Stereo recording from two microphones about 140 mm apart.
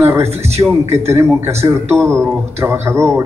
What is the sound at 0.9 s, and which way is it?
A man's voice, 20° right (ahead or behind).